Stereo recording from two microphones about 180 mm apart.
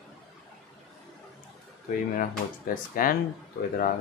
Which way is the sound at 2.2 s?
50° left (ahead or behind).